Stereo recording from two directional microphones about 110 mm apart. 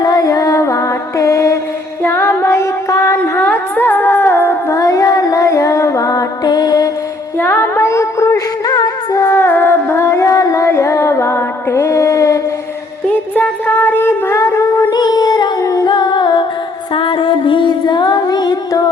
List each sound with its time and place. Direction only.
0.0 s music: 35° left (ahead or behind)
3.4 s music: 15° left (ahead or behind)
4.7 s female singing: 30° left (ahead or behind)
7.3 s music: 20° left (ahead or behind)
13.1 s a sound: 15° left (ahead or behind); by 16.5 s 40° left (ahead or behind)
16.9 s music: 50° left (ahead or behind)